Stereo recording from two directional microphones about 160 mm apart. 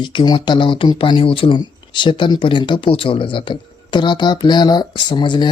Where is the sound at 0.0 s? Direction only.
30° left (ahead or behind).